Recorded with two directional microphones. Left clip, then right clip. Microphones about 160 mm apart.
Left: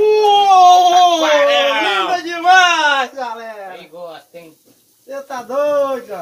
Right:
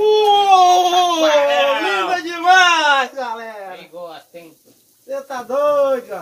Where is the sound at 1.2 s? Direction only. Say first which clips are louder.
Left 1 dB; 45° left (ahead or behind).